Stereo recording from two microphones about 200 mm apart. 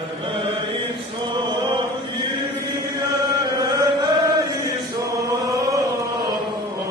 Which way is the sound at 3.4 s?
20° right (ahead or behind).